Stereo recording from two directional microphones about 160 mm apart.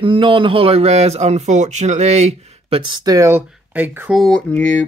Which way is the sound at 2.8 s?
25° right (ahead or behind).